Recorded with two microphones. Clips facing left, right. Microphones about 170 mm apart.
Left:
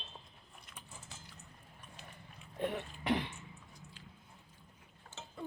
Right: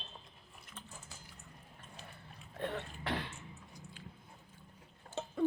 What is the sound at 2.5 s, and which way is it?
Throat clearing, 15° left (ahead or behind).